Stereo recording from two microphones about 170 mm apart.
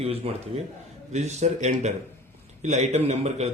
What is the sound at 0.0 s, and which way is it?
A man's voice, 35° right (ahead or behind).